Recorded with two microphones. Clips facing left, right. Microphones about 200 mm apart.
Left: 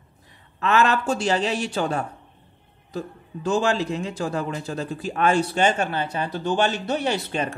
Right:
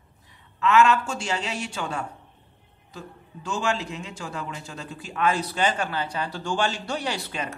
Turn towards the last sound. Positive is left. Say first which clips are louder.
# left 6 dB
turn(degrees=25)  # may be behind; listen again after turning